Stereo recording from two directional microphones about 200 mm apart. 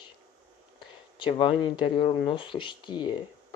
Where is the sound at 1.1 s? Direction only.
25° left (ahead or behind).